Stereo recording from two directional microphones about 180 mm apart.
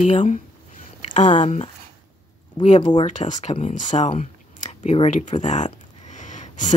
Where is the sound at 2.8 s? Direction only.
25° left (ahead or behind).